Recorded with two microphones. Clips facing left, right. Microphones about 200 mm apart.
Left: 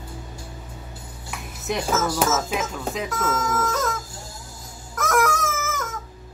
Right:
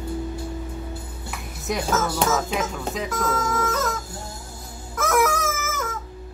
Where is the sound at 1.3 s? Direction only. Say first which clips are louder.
Even; centre (ahead or behind).